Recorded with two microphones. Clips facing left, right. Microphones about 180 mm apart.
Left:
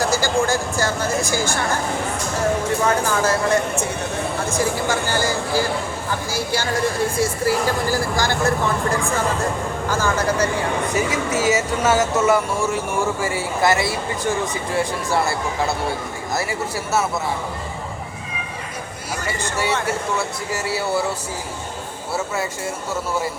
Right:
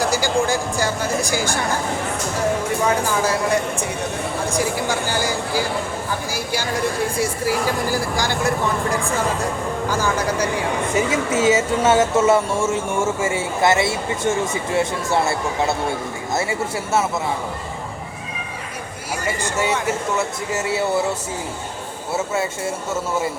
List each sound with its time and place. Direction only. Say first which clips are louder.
0.0 s speech: even; 15° right (ahead or behind)
2.8 s speech: even; 10° right (ahead or behind)
9.9 s speech: left 2 dB; 15° right (ahead or behind)
10.9 s speech: right 4 dB; 25° right (ahead or behind)
19.4 s speech: even; 15° right (ahead or behind)